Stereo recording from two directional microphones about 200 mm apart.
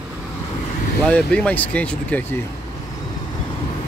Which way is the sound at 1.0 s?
5° left (ahead or behind).